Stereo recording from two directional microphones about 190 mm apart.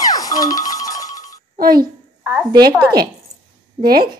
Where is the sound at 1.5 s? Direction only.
50° right (ahead or behind).